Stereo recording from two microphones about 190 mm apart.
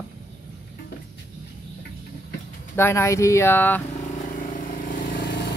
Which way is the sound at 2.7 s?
15° left (ahead or behind).